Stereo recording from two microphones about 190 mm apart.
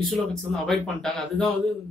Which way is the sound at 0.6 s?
Centre (ahead or behind).